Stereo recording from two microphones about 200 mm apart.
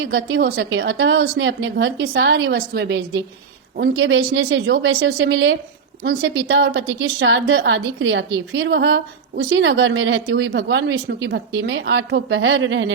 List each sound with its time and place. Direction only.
0.0 s a woman's voice: 60° right (ahead or behind)
3.8 s a woman's voice: 70° right (ahead or behind)